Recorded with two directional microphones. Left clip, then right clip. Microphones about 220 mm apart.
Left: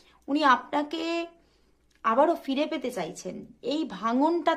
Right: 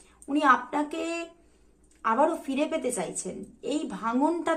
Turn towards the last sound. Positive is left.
turn(degrees=35)  # may be behind; listen again after turning